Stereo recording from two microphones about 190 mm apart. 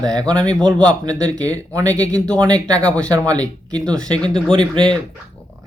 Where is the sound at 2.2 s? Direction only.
5° left (ahead or behind).